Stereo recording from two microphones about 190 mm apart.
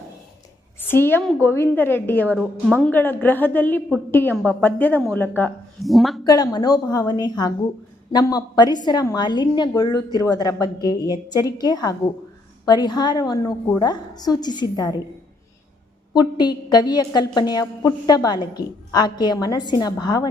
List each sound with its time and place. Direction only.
0.8 s a woman's voice: 10° left (ahead or behind)
2.2 s speech: 5° right (ahead or behind)
2.7 s a woman's voice: 10° left (ahead or behind)
6.2 s a woman's voice: 20° left (ahead or behind)
16.1 s a woman's voice: 20° left (ahead or behind)